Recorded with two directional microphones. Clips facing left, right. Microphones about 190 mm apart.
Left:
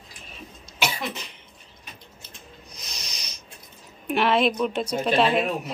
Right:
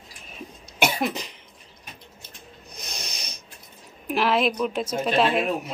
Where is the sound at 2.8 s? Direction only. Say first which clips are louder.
Right 5 dB; 55° right (ahead or behind).